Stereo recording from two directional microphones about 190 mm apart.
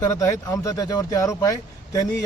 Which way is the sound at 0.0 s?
15° left (ahead or behind).